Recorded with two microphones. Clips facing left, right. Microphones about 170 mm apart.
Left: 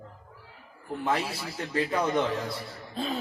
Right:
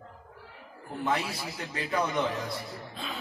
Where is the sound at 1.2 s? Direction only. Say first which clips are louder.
Left 2 dB; 30° left (ahead or behind).